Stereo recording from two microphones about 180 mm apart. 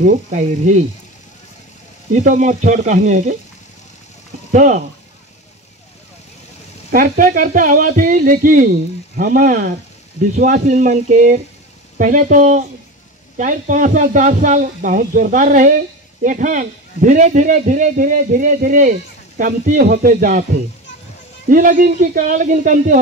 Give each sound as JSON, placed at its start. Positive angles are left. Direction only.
{"t": 0.0, "sound": "a man's voice", "side_deg": -45}
{"t": 2.1, "sound": "a man's voice", "side_deg": -45}
{"t": 4.5, "sound": "speech", "side_deg": -45}
{"t": 6.9, "sound": "a man's voice", "side_deg": -50}
{"t": 21.5, "sound": "a man's voice", "side_deg": -50}